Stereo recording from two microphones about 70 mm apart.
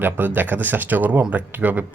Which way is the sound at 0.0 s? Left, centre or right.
Right.